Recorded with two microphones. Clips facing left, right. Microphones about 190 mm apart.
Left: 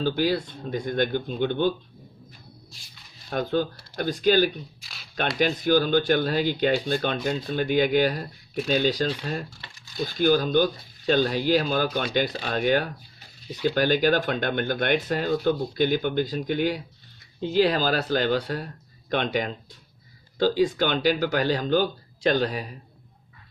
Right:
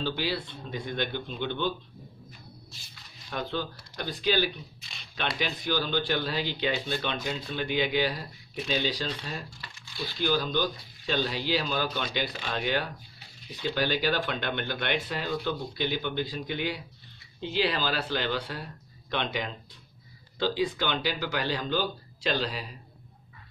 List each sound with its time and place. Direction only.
0.0 s speech: 45° left (ahead or behind)
3.3 s speech: 45° left (ahead or behind)